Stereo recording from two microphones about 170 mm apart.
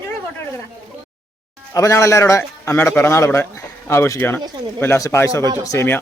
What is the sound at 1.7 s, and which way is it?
A man's voice, 20° left (ahead or behind).